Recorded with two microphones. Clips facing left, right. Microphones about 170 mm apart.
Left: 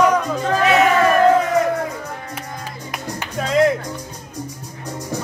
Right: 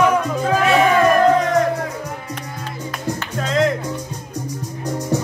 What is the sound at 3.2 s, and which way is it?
Music, 5° left (ahead or behind).